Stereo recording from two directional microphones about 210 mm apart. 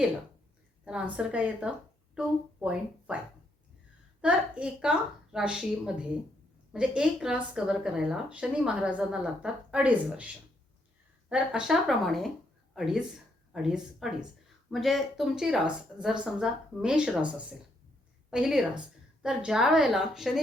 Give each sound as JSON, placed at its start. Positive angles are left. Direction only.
{"t": 0.9, "sound": "a woman's voice", "side_deg": -5}
{"t": 4.2, "sound": "a woman's voice", "side_deg": -5}
{"t": 11.3, "sound": "a woman's voice", "side_deg": -5}